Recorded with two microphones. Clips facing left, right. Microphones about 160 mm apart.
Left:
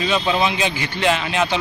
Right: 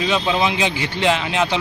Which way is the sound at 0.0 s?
10° right (ahead or behind).